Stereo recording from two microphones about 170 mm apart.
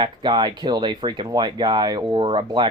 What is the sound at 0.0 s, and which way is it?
Speech, 25° right (ahead or behind).